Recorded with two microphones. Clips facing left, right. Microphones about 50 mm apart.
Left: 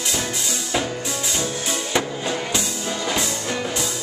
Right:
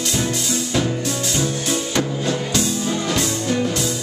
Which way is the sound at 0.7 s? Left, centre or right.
Centre.